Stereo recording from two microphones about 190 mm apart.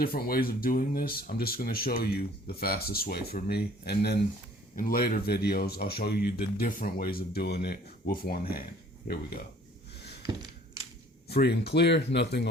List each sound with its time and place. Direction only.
0.0 s speech: 50° left (ahead or behind)
11.3 s speech: 55° left (ahead or behind)